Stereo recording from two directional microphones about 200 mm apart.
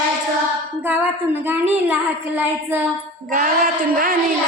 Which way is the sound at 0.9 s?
10° right (ahead or behind).